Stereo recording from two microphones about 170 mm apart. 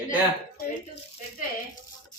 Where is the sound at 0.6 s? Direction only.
60° left (ahead or behind).